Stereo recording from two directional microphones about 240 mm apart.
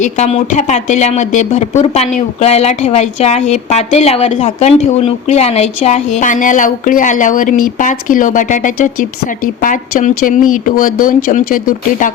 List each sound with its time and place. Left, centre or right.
0.0 s speech: left